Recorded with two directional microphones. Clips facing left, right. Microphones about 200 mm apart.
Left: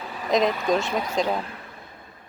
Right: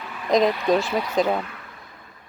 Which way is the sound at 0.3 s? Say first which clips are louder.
Right 3 dB; centre (ahead or behind).